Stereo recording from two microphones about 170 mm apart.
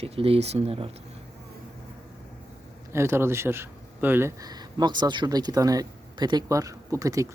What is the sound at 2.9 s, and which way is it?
Speech, 15° right (ahead or behind).